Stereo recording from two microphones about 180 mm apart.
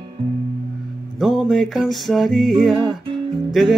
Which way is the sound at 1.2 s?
Centre (ahead or behind).